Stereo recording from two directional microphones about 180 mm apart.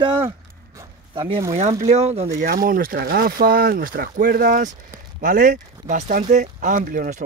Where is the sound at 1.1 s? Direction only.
30° right (ahead or behind).